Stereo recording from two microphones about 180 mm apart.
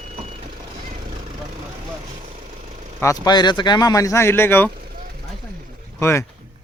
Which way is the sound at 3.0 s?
20° left (ahead or behind).